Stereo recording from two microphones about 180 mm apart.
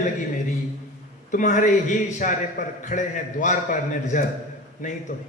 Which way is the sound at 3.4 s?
45° left (ahead or behind).